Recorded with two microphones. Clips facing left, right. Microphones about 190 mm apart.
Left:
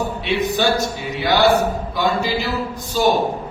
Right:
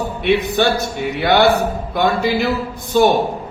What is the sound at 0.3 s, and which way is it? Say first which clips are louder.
Speech: right 5 dB; 60° right (ahead or behind).